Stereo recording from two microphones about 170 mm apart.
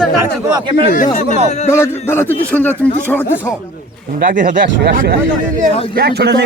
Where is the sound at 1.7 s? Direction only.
15° left (ahead or behind).